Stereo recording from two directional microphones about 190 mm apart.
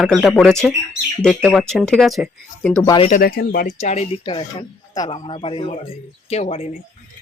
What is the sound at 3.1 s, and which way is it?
Speech, 50° left (ahead or behind).